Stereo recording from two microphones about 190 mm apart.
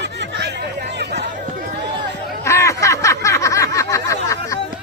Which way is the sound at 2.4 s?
15° left (ahead or behind).